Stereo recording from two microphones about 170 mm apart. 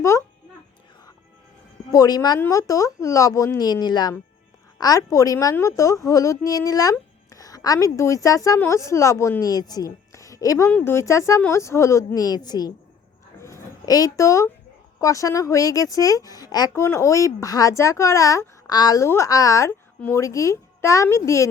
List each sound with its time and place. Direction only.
0.0 s babbling: 20° left (ahead or behind)
1.9 s a woman's voice: 20° left (ahead or behind)
13.4 s a sound: 20° left (ahead or behind)
15.0 s speech: 20° left (ahead or behind)